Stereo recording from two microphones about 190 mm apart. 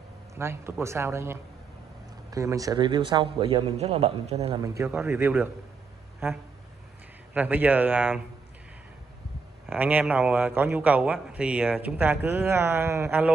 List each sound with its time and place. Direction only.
0.3 s a man's voice: 15° right (ahead or behind); by 4.6 s 30° right (ahead or behind)
4.6 s a man's voice: 15° right (ahead or behind)
9.7 s a man's voice: 10° right (ahead or behind)